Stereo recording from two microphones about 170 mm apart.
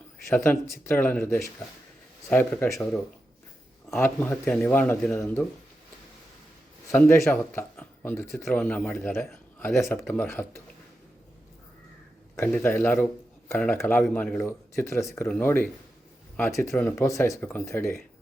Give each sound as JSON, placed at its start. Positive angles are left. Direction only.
{"t": 0.3, "sound": "speech", "side_deg": 15}
{"t": 3.9, "sound": "speech", "side_deg": 15}
{"t": 7.3, "sound": "speech", "side_deg": 10}
{"t": 12.4, "sound": "speech", "side_deg": 10}
{"t": 16.6, "sound": "speech", "side_deg": 5}